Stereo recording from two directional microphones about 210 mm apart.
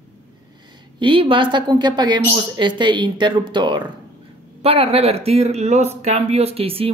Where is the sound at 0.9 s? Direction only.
25° right (ahead or behind).